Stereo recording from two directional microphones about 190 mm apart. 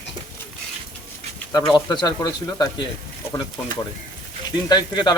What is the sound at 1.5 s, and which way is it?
Speech, 20° left (ahead or behind).